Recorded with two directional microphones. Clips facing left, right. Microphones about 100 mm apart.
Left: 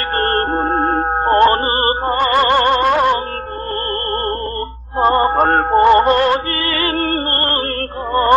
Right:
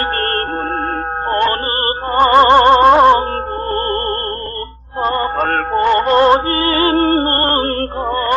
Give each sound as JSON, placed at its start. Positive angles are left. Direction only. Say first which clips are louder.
{"t": 1.3, "sound": "music", "louder": "left 4 dB", "side_deg": 25}
{"t": 2.1, "sound": "music", "louder": "right 7 dB", "side_deg": -30}
{"t": 5.0, "sound": "music", "louder": "left 4 dB", "side_deg": 25}
{"t": 6.1, "sound": "music", "louder": "right 4 dB", "side_deg": -25}
{"t": 8.1, "sound": "music", "louder": "left 6 dB", "side_deg": 25}